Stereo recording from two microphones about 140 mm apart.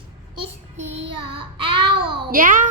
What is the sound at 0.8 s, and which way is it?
Child singing, 45° right (ahead or behind).